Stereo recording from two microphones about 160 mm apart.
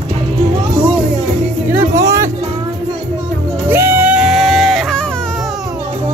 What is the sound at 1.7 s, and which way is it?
Music, 20° right (ahead or behind).